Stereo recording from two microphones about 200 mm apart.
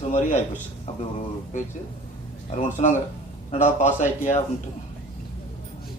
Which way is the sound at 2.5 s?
35° left (ahead or behind).